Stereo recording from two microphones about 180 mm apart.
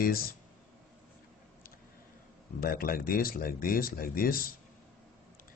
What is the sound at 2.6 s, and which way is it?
Speech, 55° left (ahead or behind).